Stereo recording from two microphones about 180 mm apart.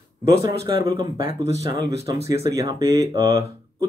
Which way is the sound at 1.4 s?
20° right (ahead or behind).